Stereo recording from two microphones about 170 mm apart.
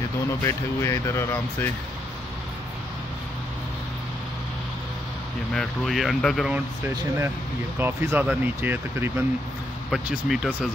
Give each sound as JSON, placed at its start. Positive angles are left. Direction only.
{"t": 0.4, "sound": "speech", "side_deg": 15}
{"t": 5.5, "sound": "speech", "side_deg": 0}
{"t": 7.8, "sound": "speech", "side_deg": -15}